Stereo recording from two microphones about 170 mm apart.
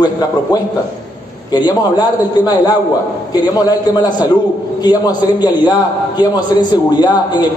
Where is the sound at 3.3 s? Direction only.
25° left (ahead or behind).